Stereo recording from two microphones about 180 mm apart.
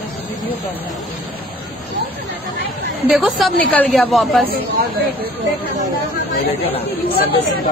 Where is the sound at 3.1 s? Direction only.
Centre (ahead or behind).